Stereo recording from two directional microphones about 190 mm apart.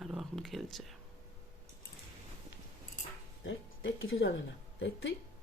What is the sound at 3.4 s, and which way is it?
Speech, 90° left.